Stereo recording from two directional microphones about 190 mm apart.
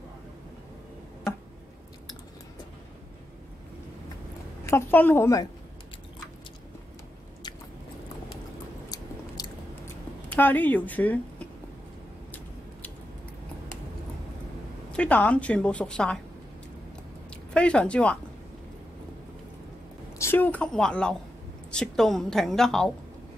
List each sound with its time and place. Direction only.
4.6 s a woman's voice: 10° left (ahead or behind)
9.4 s biting: 20° left (ahead or behind)
10.3 s speech: 10° left (ahead or behind)
14.9 s a woman's voice: 5° left (ahead or behind)
17.6 s a woman's voice: 5° left (ahead or behind)
20.2 s a woman's voice: 10° left (ahead or behind)